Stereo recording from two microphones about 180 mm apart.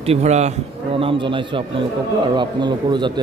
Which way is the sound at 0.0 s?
35° right (ahead or behind).